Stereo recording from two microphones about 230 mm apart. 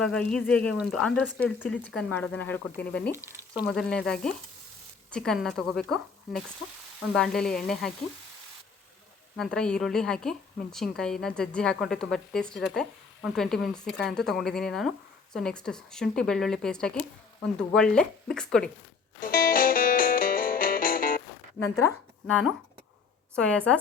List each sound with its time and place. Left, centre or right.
0.0 s a woman's voice: centre
3.2 s a woman's voice: centre
9.4 s a woman's voice: centre
19.2 s music: left
21.8 s a woman's voice: centre